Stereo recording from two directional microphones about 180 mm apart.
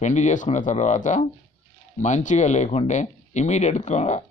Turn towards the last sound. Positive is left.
turn(degrees=40)  # may be behind; listen again after turning